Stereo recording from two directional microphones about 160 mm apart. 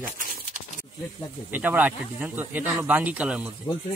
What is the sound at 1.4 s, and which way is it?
Speech, 10° right (ahead or behind).